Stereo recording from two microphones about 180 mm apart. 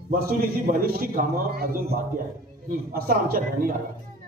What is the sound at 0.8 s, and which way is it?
A man's voice, 55° right (ahead or behind).